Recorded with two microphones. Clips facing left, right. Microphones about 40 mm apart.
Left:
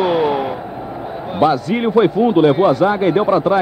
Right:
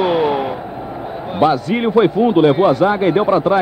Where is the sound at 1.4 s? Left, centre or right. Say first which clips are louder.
Even; right.